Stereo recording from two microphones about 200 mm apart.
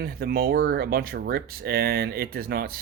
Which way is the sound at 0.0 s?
50° right (ahead or behind).